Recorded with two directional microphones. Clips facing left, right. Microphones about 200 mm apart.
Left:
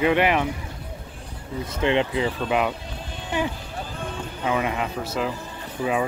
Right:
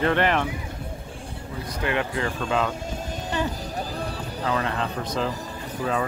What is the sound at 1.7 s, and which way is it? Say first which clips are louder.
Speech: left 5 dB; 25° left (ahead or behind).